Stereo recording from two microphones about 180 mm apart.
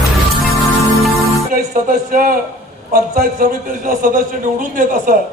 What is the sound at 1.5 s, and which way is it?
A man's voice, 45° right (ahead or behind).